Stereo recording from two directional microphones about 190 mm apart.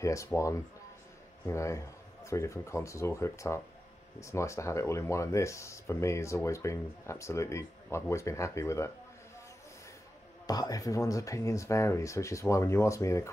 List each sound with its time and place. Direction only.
0.0 s speech: 15° left (ahead or behind)
10.4 s speech: 20° left (ahead or behind)